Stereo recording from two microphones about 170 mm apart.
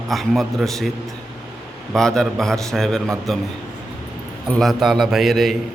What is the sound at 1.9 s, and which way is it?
A man's voice, 5° left (ahead or behind).